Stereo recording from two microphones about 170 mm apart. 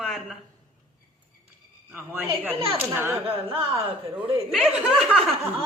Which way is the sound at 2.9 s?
15° right (ahead or behind).